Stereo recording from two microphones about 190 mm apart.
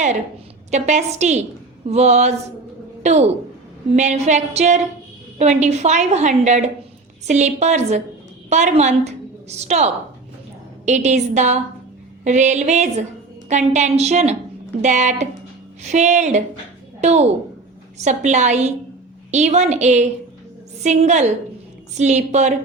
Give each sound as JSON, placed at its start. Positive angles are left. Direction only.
{"t": 0.7, "sound": "a woman's voice", "side_deg": -35}